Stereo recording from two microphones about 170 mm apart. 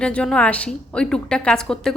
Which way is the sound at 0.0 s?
5° left (ahead or behind).